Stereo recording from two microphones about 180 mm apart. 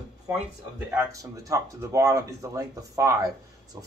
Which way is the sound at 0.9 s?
20° right (ahead or behind).